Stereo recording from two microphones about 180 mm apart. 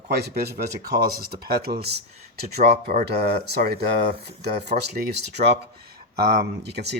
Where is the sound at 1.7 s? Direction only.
30° right (ahead or behind).